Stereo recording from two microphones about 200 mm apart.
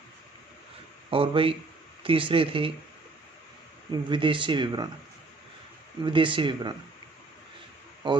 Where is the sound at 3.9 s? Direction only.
25° right (ahead or behind).